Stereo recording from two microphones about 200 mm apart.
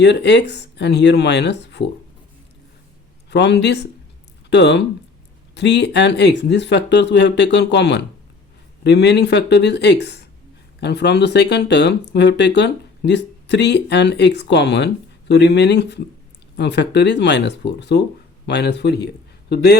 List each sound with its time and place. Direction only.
0.0 s speech: 60° left (ahead or behind)
3.2 s a man's voice: 60° left (ahead or behind)